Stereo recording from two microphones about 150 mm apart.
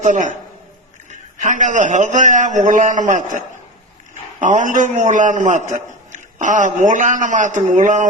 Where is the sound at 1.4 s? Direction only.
55° right (ahead or behind).